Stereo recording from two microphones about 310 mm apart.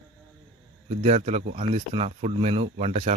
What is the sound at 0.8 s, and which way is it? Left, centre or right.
Speech, right.